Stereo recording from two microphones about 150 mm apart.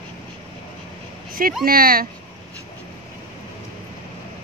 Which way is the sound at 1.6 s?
75° right (ahead or behind).